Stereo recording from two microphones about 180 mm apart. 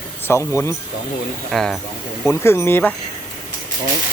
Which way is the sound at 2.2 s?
15° left (ahead or behind).